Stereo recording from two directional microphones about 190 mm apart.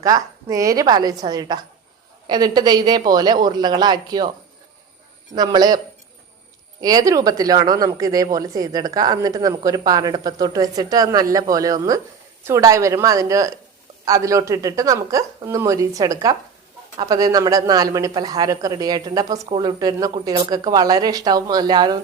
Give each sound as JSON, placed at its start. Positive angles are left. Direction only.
{"t": 0.0, "sound": "a woman's voice", "side_deg": -15}
{"t": 5.3, "sound": "speech", "side_deg": -20}
{"t": 6.8, "sound": "a woman's voice", "side_deg": -20}